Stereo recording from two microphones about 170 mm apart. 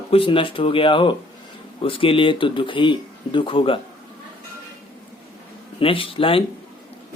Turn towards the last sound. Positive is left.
turn(degrees=30)  # may be behind; listen again after turning